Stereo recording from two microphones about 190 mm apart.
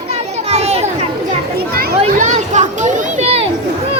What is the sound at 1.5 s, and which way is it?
Children playing, 50° right (ahead or behind).